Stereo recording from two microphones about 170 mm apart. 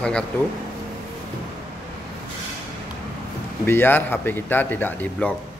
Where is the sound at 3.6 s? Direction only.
10° left (ahead or behind).